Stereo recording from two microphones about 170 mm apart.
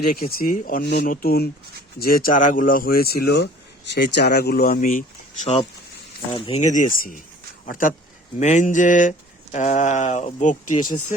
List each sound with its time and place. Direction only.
0.1 s speech: 60° left (ahead or behind)
6.3 s speech: 30° left (ahead or behind)
6.6 s speech: 50° left (ahead or behind)